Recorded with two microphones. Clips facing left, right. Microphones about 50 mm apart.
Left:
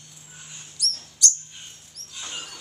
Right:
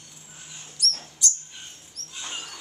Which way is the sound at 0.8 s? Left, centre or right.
Right.